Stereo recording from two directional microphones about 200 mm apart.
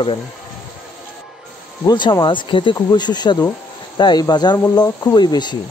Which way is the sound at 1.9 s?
25° left (ahead or behind).